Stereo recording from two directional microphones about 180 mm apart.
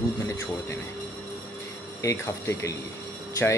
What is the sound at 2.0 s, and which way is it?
Speech, 15° left (ahead or behind).